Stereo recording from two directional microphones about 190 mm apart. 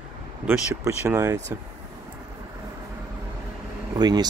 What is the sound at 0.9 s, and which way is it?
Speech, 15° right (ahead or behind).